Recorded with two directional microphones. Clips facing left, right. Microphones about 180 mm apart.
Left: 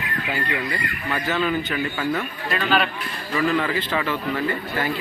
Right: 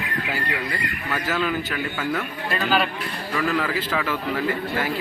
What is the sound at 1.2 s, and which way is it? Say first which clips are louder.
A man's voice: left 2 dB; 5° right (ahead or behind).